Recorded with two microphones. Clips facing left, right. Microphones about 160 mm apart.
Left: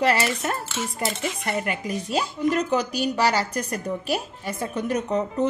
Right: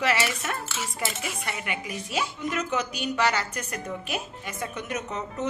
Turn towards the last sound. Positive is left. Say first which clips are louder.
# left 8 dB
turn(degrees=35)  # may be behind; listen again after turning